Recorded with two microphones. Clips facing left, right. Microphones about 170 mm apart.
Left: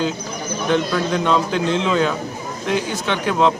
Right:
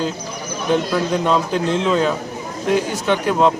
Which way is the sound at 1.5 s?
40° right (ahead or behind).